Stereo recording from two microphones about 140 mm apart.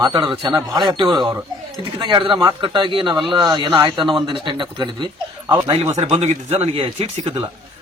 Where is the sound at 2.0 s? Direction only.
35° right (ahead or behind).